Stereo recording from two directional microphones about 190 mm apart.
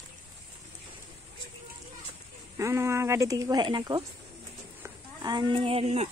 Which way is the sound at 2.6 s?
15° right (ahead or behind).